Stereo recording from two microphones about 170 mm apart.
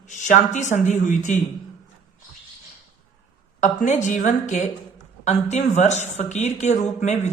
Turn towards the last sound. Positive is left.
turn(degrees=45)  # may be behind; listen again after turning